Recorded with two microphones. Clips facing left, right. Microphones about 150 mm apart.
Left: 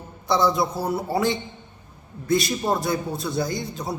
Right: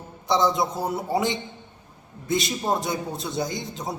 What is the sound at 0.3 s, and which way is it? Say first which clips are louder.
A man's voice: left 1 dB; 20° right (ahead or behind).